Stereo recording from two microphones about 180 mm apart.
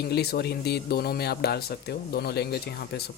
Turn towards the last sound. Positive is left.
turn(degrees=60)  # may be behind; listen again after turning